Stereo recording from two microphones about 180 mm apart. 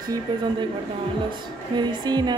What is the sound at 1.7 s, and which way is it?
Speech, 25° right (ahead or behind).